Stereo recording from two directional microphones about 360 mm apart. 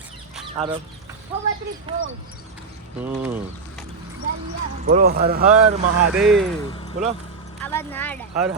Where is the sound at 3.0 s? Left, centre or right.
Centre.